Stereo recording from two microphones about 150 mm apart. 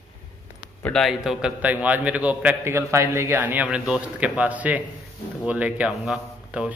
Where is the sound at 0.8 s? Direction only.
5° left (ahead or behind).